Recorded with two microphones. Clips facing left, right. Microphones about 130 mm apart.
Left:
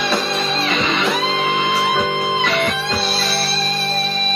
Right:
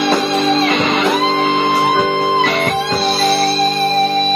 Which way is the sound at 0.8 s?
45° right (ahead or behind).